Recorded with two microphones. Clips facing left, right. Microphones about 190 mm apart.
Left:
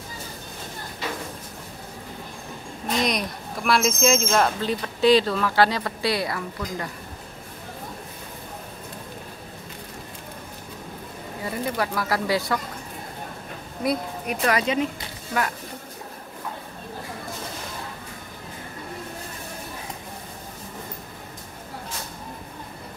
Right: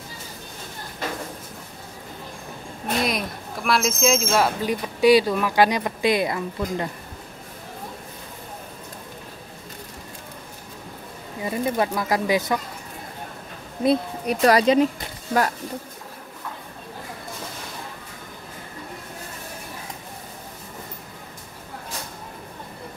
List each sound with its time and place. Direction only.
3.0 s speech: 5° right (ahead or behind); by 6.9 s 20° right (ahead or behind)
11.4 s speech: 20° right (ahead or behind)
13.8 s speech: 35° right (ahead or behind)